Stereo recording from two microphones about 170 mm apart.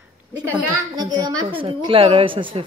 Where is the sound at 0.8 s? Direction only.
25° right (ahead or behind).